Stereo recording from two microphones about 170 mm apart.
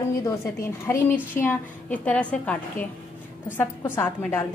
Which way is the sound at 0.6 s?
15° left (ahead or behind).